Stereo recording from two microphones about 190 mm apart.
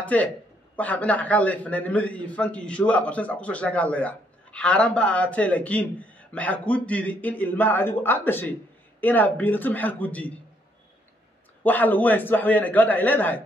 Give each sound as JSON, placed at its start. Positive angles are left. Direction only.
{"t": 0.0, "sound": "a man's voice", "side_deg": 10}
{"t": 11.6, "sound": "a man's voice", "side_deg": 10}